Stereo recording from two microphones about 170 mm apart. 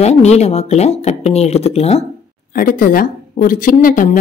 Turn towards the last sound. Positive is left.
turn(degrees=50)  # may be behind; listen again after turning